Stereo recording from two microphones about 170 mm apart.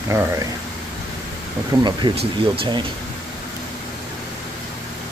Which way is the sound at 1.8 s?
25° right (ahead or behind).